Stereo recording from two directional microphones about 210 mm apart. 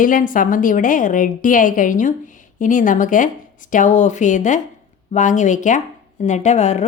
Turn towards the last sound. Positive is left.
turn(degrees=35)  # may be behind; listen again after turning